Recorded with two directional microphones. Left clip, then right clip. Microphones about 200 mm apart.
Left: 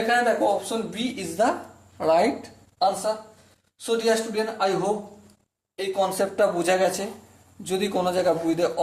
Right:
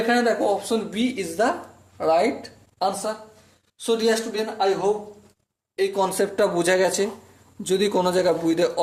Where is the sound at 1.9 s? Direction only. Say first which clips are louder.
Even; 5° left (ahead or behind).